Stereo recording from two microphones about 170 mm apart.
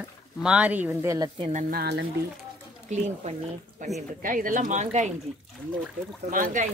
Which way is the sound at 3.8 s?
45° right (ahead or behind).